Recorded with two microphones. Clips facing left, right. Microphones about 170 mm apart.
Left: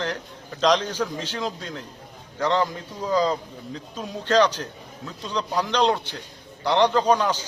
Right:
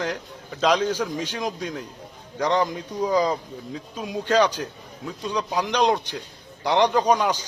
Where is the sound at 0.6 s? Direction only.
10° right (ahead or behind).